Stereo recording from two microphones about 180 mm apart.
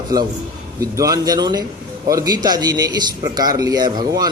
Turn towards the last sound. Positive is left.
turn(degrees=-20)  # may be behind; listen again after turning